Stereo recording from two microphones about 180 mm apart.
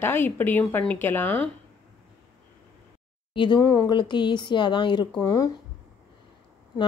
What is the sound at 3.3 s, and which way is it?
A woman's voice, 25° left (ahead or behind).